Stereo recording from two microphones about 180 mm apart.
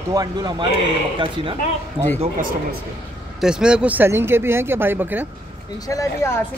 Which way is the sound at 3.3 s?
5° right (ahead or behind).